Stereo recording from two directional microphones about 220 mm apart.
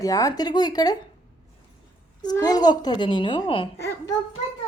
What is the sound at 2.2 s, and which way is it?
A child's voice, 20° left (ahead or behind).